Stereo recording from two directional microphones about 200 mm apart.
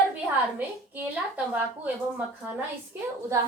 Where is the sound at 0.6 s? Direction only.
10° right (ahead or behind).